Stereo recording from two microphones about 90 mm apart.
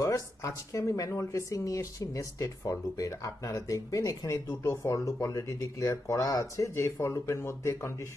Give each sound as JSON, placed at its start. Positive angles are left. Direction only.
{"t": 0.0, "sound": "speech", "side_deg": 40}